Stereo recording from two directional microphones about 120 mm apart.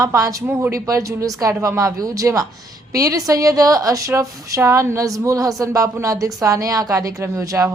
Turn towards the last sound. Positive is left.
turn(degrees=-20)  # may be behind; listen again after turning